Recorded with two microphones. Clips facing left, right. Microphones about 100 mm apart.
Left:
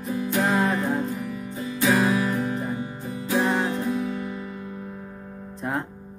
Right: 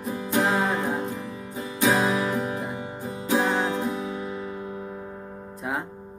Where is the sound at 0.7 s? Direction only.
15° right (ahead or behind).